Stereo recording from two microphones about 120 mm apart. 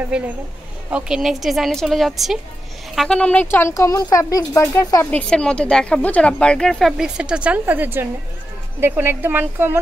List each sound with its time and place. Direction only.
0.8 s speech: 5° right (ahead or behind); by 5.0 s 25° left (ahead or behind)
5.1 s speech: 10° left (ahead or behind); by 9.8 s 15° right (ahead or behind)